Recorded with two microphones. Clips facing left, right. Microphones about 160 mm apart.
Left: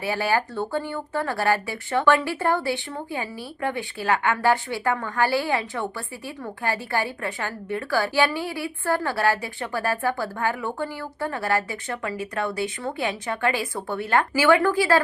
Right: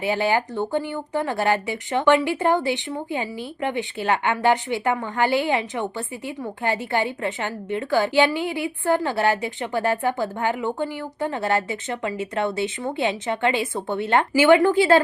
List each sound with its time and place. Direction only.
0.0 s speech: 20° right (ahead or behind)